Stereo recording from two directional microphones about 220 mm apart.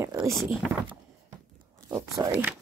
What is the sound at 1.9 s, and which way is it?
Speech, 15° right (ahead or behind).